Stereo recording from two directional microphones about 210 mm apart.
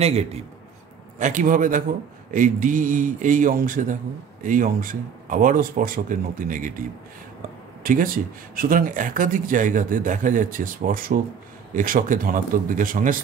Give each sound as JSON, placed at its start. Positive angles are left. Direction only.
{"t": 0.0, "sound": "a man's voice", "side_deg": -30}
{"t": 7.8, "sound": "speech", "side_deg": -40}